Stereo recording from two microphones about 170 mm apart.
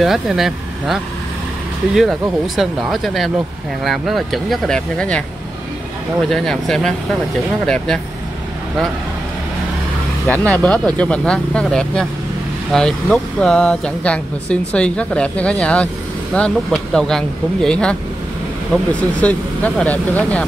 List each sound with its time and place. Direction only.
0.0 s speech: centre (ahead or behind)
2.0 s speech: centre (ahead or behind)
6.2 s speech: 5° left (ahead or behind)
10.2 s speech: 5° left (ahead or behind)